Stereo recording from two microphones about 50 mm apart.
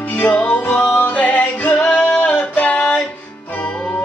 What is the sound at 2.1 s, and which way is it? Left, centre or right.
Music, centre.